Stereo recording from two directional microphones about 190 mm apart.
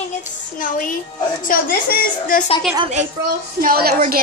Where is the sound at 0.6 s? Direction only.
45° left (ahead or behind).